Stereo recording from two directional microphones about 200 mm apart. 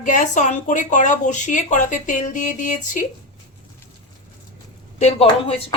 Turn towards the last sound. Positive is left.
turn(degrees=30)  # may be behind; listen again after turning